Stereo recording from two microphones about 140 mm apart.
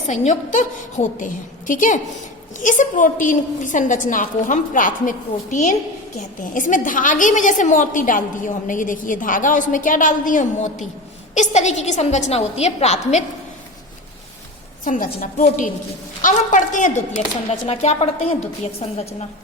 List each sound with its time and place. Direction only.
0.1 s a woman's voice: 60° left (ahead or behind)
11.3 s a woman's voice: 55° left (ahead or behind)
14.8 s a woman's voice: 75° left (ahead or behind)
16.2 s a woman's voice: 65° left (ahead or behind)
17.5 s a woman's voice: 45° left (ahead or behind)